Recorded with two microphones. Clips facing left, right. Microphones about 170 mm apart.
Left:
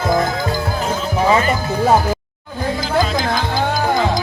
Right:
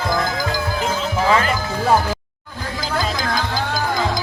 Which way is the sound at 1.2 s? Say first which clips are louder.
Left 3 dB; 20° left (ahead or behind).